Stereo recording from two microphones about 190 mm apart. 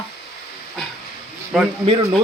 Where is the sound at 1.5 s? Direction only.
Centre (ahead or behind).